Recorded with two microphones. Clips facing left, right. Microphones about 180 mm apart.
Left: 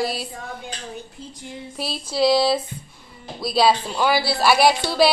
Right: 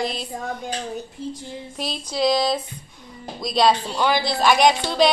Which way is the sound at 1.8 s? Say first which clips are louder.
Left 2 dB; 5° left (ahead or behind).